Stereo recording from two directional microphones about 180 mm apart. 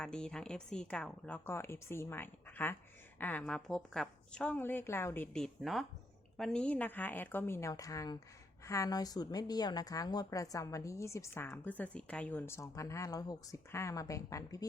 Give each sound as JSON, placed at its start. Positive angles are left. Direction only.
{"t": 0.0, "sound": "a woman's voice", "side_deg": 5}